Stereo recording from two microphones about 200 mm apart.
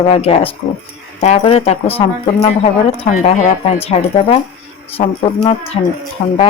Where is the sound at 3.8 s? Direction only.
30° left (ahead or behind).